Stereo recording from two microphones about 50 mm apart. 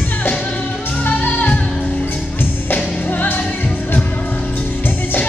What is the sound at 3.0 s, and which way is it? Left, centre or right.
Music, left.